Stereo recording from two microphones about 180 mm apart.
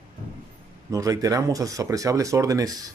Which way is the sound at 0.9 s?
20° right (ahead or behind).